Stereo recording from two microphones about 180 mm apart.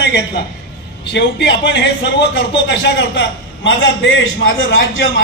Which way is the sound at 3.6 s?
90° left.